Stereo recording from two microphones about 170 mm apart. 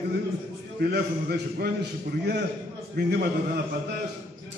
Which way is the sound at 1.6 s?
75° right (ahead or behind).